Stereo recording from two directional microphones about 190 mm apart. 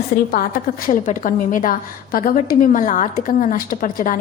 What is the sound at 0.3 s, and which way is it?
A woman's voice, 50° left (ahead or behind).